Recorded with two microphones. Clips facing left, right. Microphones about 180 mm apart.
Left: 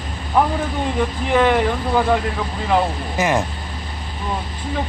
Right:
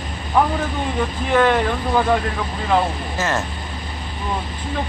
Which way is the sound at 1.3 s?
15° left (ahead or behind).